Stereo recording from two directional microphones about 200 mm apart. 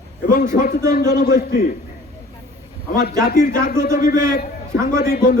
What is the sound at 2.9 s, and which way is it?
A man's voice, 50° left (ahead or behind).